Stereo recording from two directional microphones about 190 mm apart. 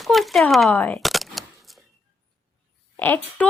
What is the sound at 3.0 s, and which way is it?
Speech, 10° left (ahead or behind).